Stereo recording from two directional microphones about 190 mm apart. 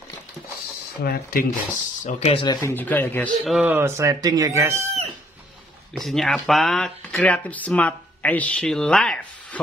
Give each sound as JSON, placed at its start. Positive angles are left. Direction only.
{"t": 1.0, "sound": "speech", "side_deg": 50}
{"t": 2.0, "sound": "speech", "side_deg": 35}
{"t": 2.7, "sound": "speech", "side_deg": 10}
{"t": 3.4, "sound": "speech", "side_deg": -5}
{"t": 5.9, "sound": "speech", "side_deg": 0}